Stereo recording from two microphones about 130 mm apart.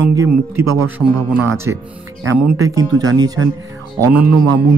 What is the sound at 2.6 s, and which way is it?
Speech, 30° right (ahead or behind).